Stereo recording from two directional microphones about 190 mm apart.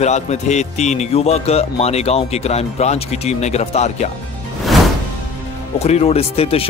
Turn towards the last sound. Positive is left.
turn(degrees=30)  # may be behind; listen again after turning